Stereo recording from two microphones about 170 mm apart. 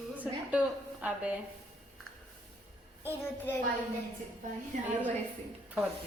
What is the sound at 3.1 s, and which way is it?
Speech, 10° left (ahead or behind).